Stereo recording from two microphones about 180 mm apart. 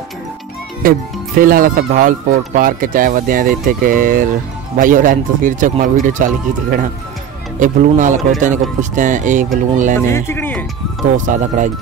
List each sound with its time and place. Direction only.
0.8 s speech: 50° right (ahead or behind)
9.9 s speech: 15° left (ahead or behind)
11.1 s speech: 45° right (ahead or behind)